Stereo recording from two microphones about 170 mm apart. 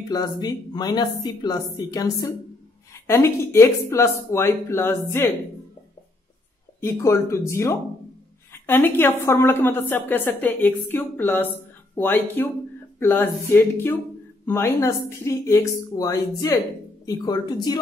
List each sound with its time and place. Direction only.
0.1 s a woman's voice: 25° left (ahead or behind)
6.8 s a woman's voice: 15° left (ahead or behind)